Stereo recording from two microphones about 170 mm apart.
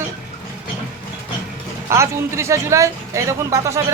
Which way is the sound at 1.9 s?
15° right (ahead or behind).